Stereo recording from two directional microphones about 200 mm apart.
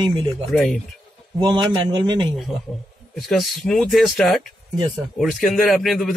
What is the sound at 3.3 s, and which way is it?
A man's voice, centre (ahead or behind).